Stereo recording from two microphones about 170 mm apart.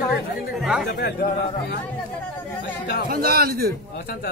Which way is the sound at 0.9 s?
65° left (ahead or behind).